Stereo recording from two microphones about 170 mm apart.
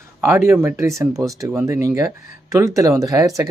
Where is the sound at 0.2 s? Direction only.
15° right (ahead or behind).